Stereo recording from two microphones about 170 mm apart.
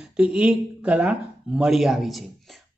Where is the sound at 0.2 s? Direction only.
5° right (ahead or behind).